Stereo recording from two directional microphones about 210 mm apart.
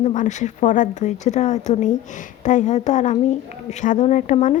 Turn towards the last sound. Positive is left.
turn(degrees=35)  # may be behind; listen again after turning